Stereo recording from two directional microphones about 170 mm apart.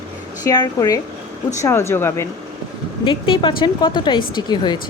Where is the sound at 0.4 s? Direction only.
25° left (ahead or behind).